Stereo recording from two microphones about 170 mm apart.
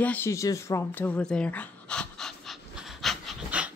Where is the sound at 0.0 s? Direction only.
10° left (ahead or behind).